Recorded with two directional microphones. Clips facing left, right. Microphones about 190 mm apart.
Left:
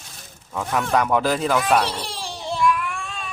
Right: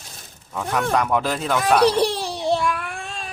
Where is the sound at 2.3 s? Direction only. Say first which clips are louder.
Right 1 dB; 35° right (ahead or behind).